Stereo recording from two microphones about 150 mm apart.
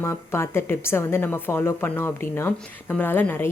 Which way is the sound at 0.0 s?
15° left (ahead or behind).